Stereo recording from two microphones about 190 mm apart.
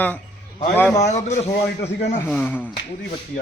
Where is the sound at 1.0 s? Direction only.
35° left (ahead or behind).